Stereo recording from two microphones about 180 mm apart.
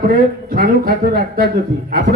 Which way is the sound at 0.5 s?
55° right (ahead or behind).